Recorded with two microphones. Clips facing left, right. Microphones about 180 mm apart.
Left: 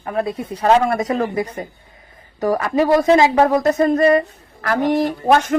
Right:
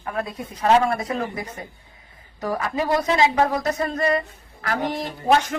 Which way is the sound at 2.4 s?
50° left (ahead or behind).